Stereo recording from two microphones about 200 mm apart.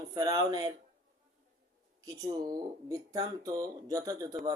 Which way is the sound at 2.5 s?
15° right (ahead or behind).